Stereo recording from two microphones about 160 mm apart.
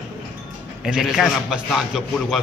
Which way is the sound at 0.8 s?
5° right (ahead or behind).